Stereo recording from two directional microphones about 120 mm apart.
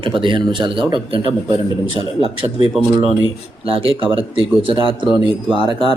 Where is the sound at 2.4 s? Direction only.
45° right (ahead or behind).